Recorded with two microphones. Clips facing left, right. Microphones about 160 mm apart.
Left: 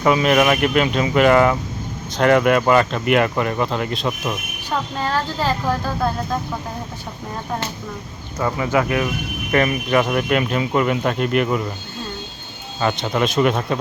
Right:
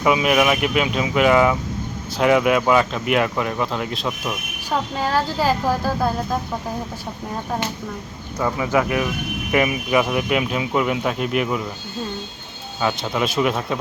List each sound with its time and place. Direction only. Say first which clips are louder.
0.0 s a child's voice: left 2 dB; 5° right (ahead or behind)
8.5 s a child's voice: left 1 dB; 15° right (ahead or behind)
12.8 s speech: left 2 dB; centre (ahead or behind)